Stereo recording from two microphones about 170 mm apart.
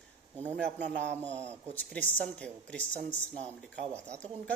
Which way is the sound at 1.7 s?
10° left (ahead or behind).